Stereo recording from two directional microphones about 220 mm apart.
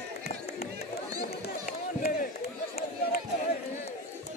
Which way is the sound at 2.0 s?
45° left (ahead or behind).